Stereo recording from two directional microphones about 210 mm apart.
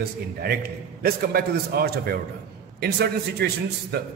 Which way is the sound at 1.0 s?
45° right (ahead or behind).